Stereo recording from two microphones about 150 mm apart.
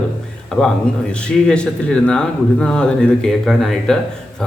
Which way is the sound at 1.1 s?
5° left (ahead or behind).